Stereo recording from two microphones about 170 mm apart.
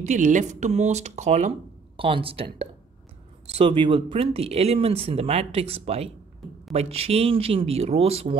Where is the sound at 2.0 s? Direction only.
30° right (ahead or behind).